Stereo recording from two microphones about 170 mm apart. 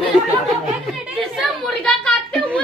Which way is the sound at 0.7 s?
5° right (ahead or behind).